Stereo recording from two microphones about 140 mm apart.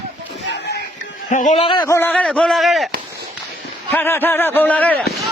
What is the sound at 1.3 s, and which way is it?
Speech, 65° left (ahead or behind).